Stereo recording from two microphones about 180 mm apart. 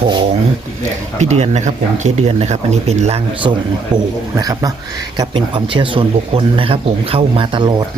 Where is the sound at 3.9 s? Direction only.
20° right (ahead or behind).